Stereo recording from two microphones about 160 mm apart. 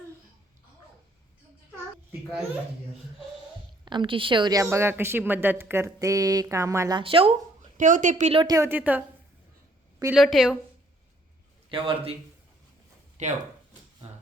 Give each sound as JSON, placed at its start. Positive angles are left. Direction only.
{"t": 3.8, "sound": "a woman's voice", "side_deg": -30}
{"t": 7.0, "sound": "speech", "side_deg": -35}
{"t": 7.8, "sound": "a woman's voice", "side_deg": -55}
{"t": 8.3, "sound": "a woman's voice", "side_deg": -30}
{"t": 10.1, "sound": "a woman's voice", "side_deg": 0}
{"t": 11.7, "sound": "a man's voice", "side_deg": -30}
{"t": 13.2, "sound": "speech", "side_deg": -45}